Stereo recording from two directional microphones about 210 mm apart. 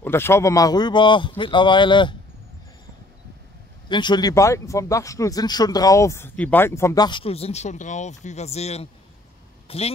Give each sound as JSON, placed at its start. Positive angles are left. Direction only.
{"t": 0.0, "sound": "speech", "side_deg": 10}
{"t": 3.9, "sound": "speech", "side_deg": 20}